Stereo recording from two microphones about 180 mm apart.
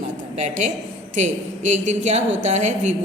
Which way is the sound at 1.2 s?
40° right (ahead or behind).